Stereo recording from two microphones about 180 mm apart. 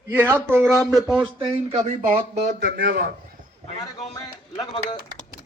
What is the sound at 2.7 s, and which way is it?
Speech, 55° right (ahead or behind).